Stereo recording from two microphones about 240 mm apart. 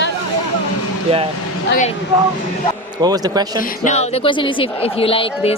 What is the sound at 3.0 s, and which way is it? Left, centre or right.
Speech, centre.